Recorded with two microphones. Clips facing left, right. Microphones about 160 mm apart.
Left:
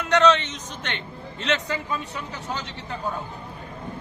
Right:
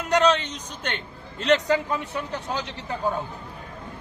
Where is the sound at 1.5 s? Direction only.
40° right (ahead or behind).